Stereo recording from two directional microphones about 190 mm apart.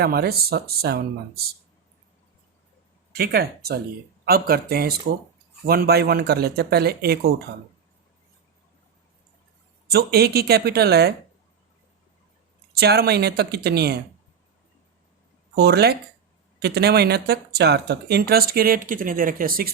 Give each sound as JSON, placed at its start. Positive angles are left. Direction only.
{"t": 0.0, "sound": "speech", "side_deg": -55}
{"t": 3.1, "sound": "speech", "side_deg": -55}
{"t": 9.9, "sound": "speech", "side_deg": -55}
{"t": 12.7, "sound": "speech", "side_deg": -55}
{"t": 15.5, "sound": "speech", "side_deg": -60}